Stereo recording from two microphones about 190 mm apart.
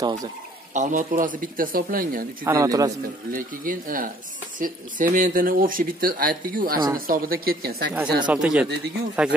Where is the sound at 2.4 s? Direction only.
15° right (ahead or behind).